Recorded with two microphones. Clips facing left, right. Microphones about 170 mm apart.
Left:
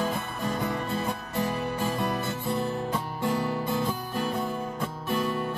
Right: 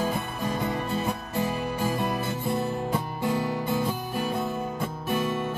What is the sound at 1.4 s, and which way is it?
Music, 10° right (ahead or behind).